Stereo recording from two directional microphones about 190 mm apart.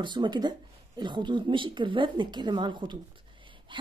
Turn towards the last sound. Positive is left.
turn(degrees=-25)  # may be behind; listen again after turning